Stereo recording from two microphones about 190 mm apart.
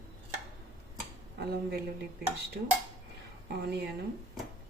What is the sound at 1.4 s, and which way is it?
Speech, 60° right (ahead or behind).